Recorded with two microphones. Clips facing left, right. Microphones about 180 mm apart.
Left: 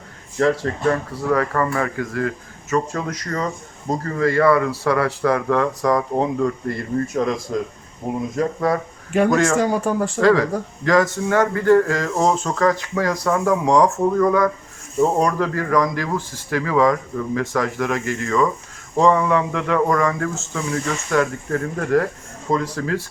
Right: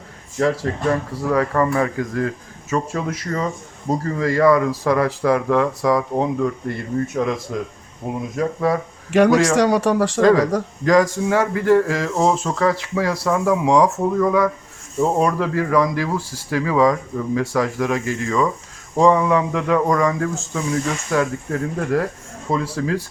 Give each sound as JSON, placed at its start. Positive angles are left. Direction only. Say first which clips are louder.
{"t": 0.3, "sound": "speech", "louder": "left 1 dB", "side_deg": -10}
{"t": 9.1, "sound": "speech", "louder": "right 3 dB", "side_deg": -85}
{"t": 10.2, "sound": "speech", "louder": "even", "side_deg": -20}